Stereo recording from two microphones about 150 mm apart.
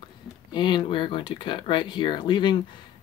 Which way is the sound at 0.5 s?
30° left (ahead or behind).